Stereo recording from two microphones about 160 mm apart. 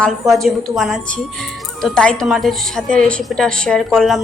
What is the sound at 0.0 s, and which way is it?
A woman's voice, centre (ahead or behind).